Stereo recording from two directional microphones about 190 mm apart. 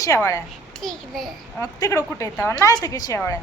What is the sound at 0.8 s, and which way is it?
Speech, centre (ahead or behind).